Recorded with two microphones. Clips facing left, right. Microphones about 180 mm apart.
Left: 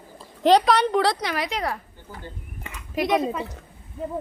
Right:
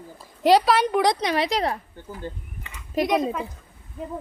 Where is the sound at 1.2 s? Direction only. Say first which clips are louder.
Right 4 dB; 25° right (ahead or behind).